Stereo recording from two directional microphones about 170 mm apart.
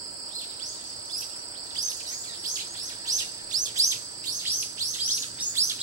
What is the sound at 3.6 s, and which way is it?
Chirp, 20° right (ahead or behind).